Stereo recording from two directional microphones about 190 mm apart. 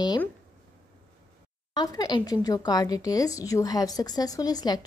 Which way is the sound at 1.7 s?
20° left (ahead or behind).